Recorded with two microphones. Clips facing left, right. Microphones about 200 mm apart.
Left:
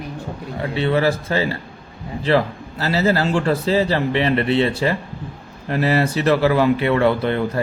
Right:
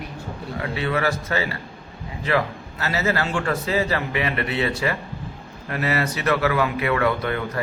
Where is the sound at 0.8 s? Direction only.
30° left (ahead or behind).